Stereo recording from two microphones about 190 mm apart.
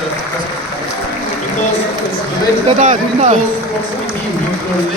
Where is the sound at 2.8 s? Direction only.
40° right (ahead or behind).